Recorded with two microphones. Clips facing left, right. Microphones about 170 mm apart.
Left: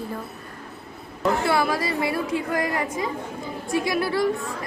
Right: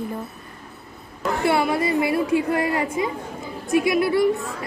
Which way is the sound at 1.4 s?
25° right (ahead or behind).